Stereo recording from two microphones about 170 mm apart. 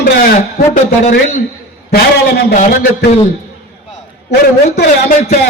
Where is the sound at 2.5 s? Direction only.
50° left (ahead or behind).